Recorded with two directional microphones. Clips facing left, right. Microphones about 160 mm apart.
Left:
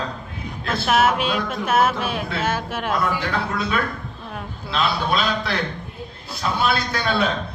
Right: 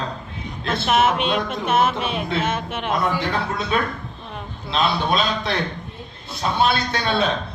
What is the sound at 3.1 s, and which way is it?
A man's voice, 20° right (ahead or behind).